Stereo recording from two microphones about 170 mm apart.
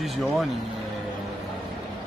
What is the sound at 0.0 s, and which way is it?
Speech, centre (ahead or behind).